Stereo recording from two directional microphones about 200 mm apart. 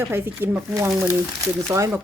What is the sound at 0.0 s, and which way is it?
Speech, 10° right (ahead or behind).